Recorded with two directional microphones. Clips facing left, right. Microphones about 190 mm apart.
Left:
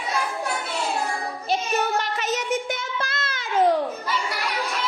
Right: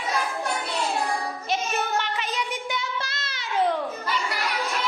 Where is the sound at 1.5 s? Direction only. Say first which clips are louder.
Left 3 dB; 40° left (ahead or behind).